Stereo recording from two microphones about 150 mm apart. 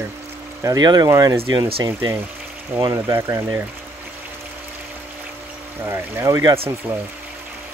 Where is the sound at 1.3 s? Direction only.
40° right (ahead or behind).